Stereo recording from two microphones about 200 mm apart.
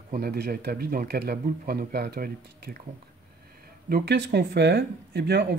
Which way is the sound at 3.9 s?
60° right (ahead or behind).